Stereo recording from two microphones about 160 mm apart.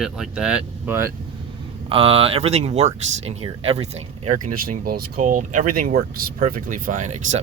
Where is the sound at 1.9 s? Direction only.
35° right (ahead or behind).